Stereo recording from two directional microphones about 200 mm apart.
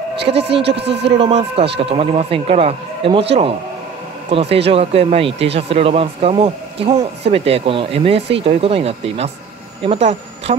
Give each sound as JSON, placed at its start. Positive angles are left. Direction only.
{"t": 0.2, "sound": "speech", "side_deg": -60}
{"t": 1.0, "sound": "speech", "side_deg": -30}
{"t": 4.3, "sound": "speech", "side_deg": -30}